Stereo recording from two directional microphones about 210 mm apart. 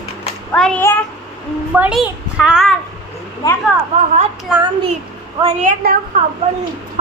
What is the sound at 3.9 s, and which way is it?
Speech, 35° right (ahead or behind).